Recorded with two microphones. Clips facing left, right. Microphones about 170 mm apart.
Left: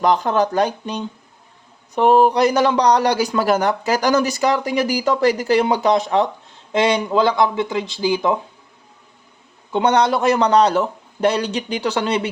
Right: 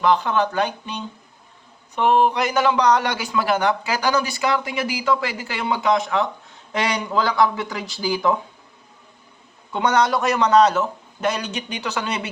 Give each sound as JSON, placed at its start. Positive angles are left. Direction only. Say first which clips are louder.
{"t": 0.0, "sound": "a man's voice", "louder": "left 2 dB", "side_deg": 40}
{"t": 9.7, "sound": "a man's voice", "louder": "left 3 dB", "side_deg": 25}